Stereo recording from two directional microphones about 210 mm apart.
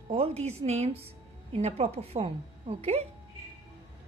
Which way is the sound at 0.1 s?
30° right (ahead or behind).